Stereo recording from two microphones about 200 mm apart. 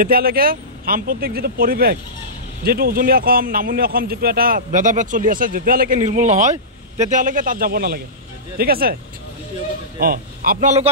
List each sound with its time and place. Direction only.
0.0 s speech: 50° right (ahead or behind)
9.9 s a man's voice: 45° right (ahead or behind)